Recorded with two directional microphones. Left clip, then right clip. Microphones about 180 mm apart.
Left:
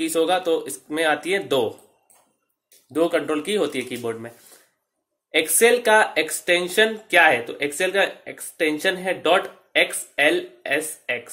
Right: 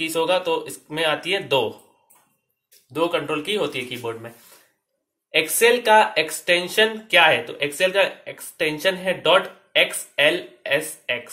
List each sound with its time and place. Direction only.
0.0 s speech: 55° left (ahead or behind)
2.9 s speech: 55° left (ahead or behind)